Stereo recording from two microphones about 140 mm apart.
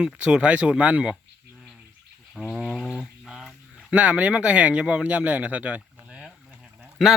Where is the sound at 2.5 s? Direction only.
Centre (ahead or behind).